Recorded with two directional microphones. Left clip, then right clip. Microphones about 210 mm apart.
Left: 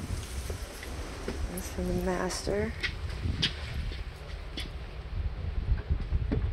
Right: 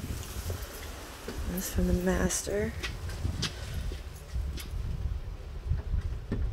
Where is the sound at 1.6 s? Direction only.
55° right (ahead or behind).